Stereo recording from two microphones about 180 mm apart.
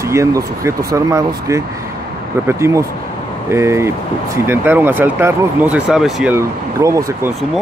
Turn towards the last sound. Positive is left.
turn(degrees=-15)  # may be behind; listen again after turning